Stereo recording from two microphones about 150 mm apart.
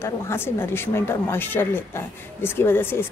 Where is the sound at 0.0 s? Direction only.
15° left (ahead or behind).